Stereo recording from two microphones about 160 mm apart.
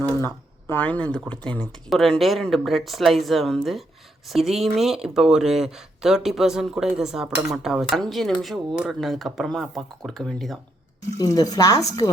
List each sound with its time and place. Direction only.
0.7 s speech: 10° left (ahead or behind)
11.2 s a woman's voice: 20° left (ahead or behind)